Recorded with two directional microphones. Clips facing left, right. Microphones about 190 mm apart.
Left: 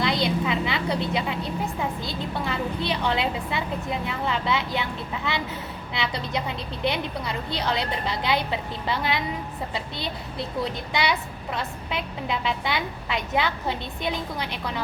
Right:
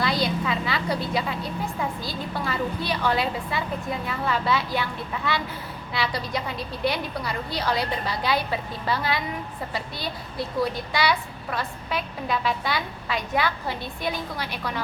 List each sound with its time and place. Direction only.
0.0 s a woman's voice: 20° left (ahead or behind)